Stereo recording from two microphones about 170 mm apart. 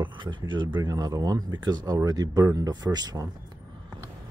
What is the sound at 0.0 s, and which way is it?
Speech, 25° right (ahead or behind).